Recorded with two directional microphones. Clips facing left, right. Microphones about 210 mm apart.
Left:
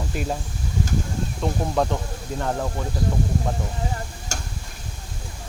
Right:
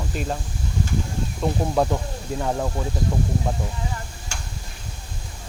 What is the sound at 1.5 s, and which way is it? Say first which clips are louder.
Speech: right 2 dB; centre (ahead or behind).